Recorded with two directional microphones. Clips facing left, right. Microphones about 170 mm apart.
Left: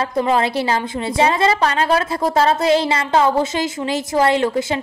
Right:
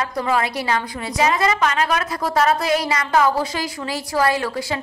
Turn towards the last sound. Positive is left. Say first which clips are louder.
# left 4 dB
turn(degrees=25)  # may be behind; listen again after turning